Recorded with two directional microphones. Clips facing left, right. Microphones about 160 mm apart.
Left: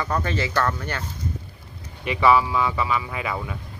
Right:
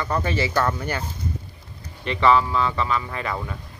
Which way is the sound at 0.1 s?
5° right (ahead or behind).